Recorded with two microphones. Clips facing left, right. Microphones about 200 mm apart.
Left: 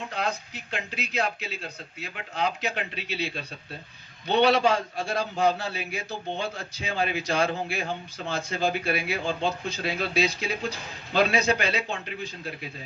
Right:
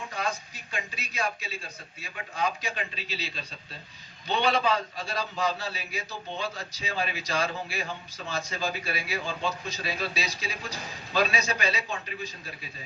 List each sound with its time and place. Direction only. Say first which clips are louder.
0.5 s a man's voice: left 4 dB; 65° left (ahead or behind)